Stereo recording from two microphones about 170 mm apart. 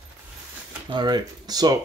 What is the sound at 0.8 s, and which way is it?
Speech, 25° right (ahead or behind).